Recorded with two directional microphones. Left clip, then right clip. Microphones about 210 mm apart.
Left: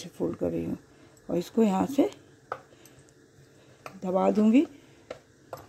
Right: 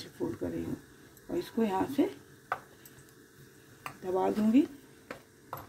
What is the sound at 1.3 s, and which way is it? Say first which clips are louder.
Speech: left 5 dB; 45° left (ahead or behind).